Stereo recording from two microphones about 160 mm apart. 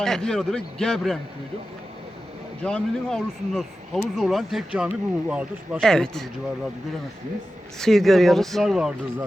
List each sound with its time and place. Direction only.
0.0 s speech: 5° left (ahead or behind)
2.6 s speech: 5° left (ahead or behind)
5.8 s speech: 5° left (ahead or behind)
7.8 s speech: centre (ahead or behind)